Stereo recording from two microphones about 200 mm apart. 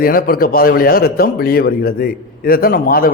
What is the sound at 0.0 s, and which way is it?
A man's voice, 45° left (ahead or behind).